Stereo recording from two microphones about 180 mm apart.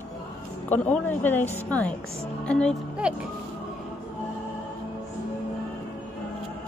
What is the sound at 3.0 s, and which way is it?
Speech, 5° right (ahead or behind).